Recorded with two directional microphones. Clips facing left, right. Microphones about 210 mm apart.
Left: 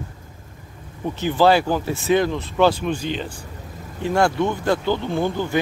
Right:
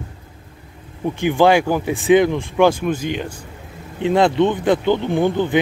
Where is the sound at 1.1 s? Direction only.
15° right (ahead or behind).